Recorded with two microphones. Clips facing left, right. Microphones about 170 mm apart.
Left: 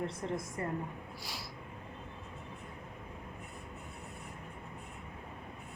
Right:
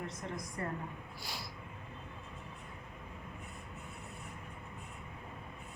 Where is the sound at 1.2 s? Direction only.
Centre (ahead or behind).